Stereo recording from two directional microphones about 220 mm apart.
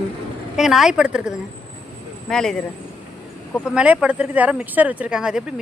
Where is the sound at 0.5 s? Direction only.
Centre (ahead or behind).